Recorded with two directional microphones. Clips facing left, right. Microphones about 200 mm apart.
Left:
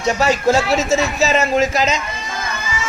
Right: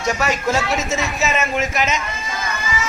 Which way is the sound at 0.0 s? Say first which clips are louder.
Left 4 dB; 30° left (ahead or behind).